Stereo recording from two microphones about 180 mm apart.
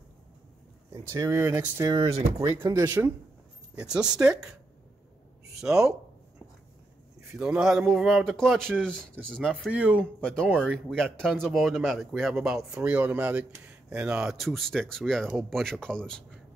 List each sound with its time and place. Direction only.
0.9 s speech: 20° right (ahead or behind)
3.9 s speech: 5° right (ahead or behind)
5.6 s speech: 5° right (ahead or behind)
7.2 s speech: 5° right (ahead or behind)